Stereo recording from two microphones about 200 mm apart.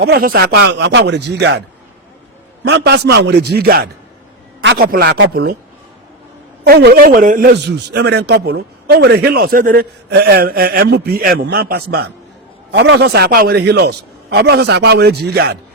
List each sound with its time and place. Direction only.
0.0 s speech: 50° right (ahead or behind)
2.6 s a man's voice: 55° right (ahead or behind)
6.7 s a man's voice: 55° right (ahead or behind)
7.5 s a man's voice: 55° right (ahead or behind)